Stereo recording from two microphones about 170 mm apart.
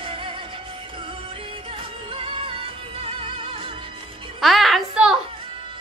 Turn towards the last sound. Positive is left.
turn(degrees=-5)  # may be behind; listen again after turning